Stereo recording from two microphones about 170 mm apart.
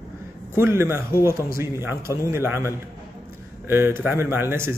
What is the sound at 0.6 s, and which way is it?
A man's voice, 15° right (ahead or behind).